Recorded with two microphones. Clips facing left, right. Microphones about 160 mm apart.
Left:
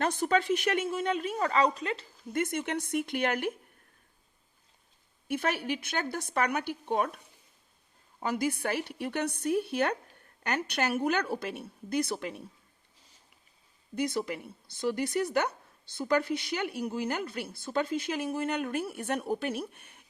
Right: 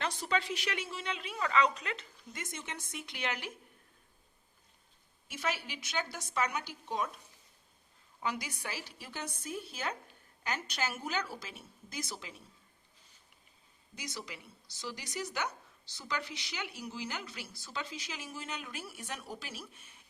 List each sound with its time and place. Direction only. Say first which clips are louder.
0.0 s speech: left 7 dB; 50° left (ahead or behind); by 2.0 s 30° left (ahead or behind)
2.3 s speech: left 13 dB; 60° left (ahead or behind)
5.3 s speech: left 7 dB; 60° left (ahead or behind)
8.2 s speech: left 8 dB; 45° left (ahead or behind)
13.9 s speech: left 14 dB; 55° left (ahead or behind)